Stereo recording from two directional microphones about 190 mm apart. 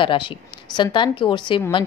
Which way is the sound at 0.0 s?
25° left (ahead or behind).